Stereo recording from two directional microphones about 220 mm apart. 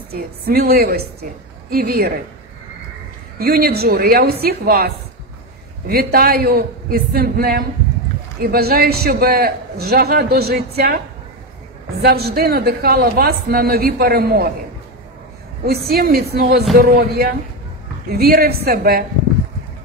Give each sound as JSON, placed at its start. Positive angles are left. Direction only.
{"t": 0.1, "sound": "a man's voice", "side_deg": -45}
{"t": 3.3, "sound": "a man's voice", "side_deg": -45}
{"t": 12.0, "sound": "a man's voice", "side_deg": -45}
{"t": 15.6, "sound": "a man's voice", "side_deg": -45}